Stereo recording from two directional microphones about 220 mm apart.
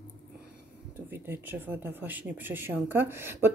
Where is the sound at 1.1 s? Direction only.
10° right (ahead or behind).